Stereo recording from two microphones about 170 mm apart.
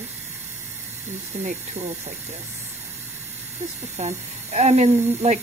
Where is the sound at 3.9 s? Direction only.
40° right (ahead or behind).